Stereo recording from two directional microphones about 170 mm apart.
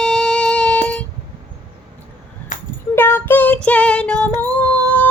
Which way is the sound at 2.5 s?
50° left (ahead or behind).